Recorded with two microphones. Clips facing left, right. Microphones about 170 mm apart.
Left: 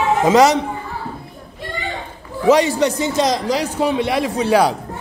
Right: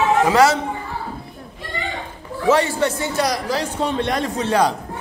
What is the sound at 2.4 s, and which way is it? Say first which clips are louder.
A man's voice: left 3 dB; 15° left (ahead or behind).